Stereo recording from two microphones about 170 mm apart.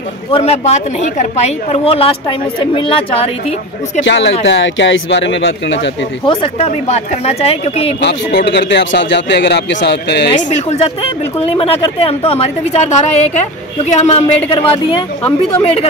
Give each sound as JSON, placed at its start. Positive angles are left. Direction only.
{"t": 0.3, "sound": "a woman's voice", "side_deg": 40}
{"t": 4.0, "sound": "speech", "side_deg": 90}
{"t": 6.2, "sound": "a woman's voice", "side_deg": 35}
{"t": 8.0, "sound": "speech", "side_deg": 90}
{"t": 10.3, "sound": "a woman's voice", "side_deg": 40}